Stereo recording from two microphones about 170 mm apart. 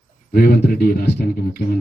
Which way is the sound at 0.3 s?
65° left (ahead or behind).